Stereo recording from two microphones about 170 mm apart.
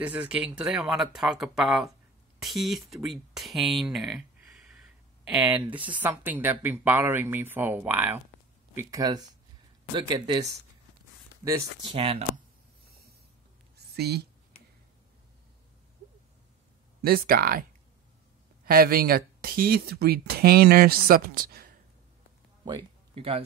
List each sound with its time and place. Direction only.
0.0 s speech: 5° right (ahead or behind); by 10.5 s 25° right (ahead or behind)
11.9 s speech: 35° right (ahead or behind)
13.7 s a sound: 70° right (ahead or behind)
17.0 s speech: 60° right (ahead or behind)
18.7 s speech: 60° right (ahead or behind)
22.7 s speech: 30° right (ahead or behind)